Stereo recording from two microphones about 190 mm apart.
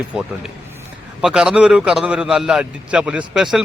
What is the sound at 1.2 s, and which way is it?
A man's voice, 5° right (ahead or behind).